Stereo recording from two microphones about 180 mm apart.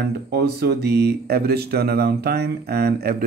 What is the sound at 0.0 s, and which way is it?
Speech, 65° right (ahead or behind).